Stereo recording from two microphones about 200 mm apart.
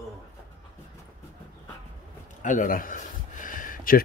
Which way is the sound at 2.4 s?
40° left (ahead or behind).